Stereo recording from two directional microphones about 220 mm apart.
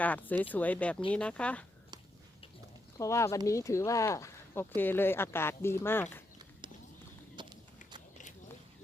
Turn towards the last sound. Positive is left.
turn(degrees=-20)  # may be behind; listen again after turning